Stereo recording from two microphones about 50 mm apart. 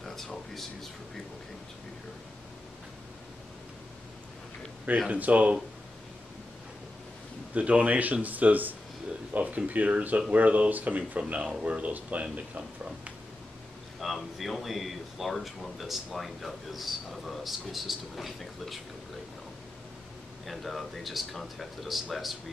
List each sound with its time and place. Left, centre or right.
0.0 s speech: centre
5.1 s speech: right
7.5 s a man's voice: right
13.9 s speech: centre
20.4 s speech: centre